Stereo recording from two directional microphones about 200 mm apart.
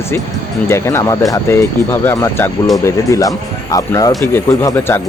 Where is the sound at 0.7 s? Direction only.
15° left (ahead or behind).